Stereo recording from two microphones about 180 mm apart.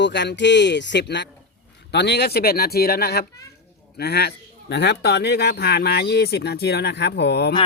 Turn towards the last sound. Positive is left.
turn(degrees=65)  # may be behind; listen again after turning